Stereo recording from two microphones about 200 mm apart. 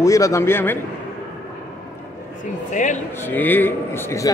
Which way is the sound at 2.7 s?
40° left (ahead or behind).